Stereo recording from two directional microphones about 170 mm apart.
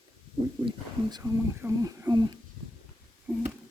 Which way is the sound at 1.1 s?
20° right (ahead or behind).